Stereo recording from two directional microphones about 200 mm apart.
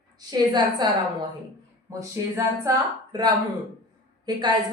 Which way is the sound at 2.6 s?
20° right (ahead or behind).